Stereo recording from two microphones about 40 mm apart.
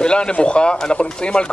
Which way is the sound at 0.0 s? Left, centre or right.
Left.